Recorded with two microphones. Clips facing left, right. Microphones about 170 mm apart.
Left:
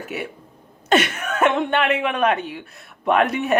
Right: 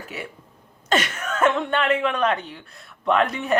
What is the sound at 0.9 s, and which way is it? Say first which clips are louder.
Speech: left 4 dB; 65° left (ahead or behind).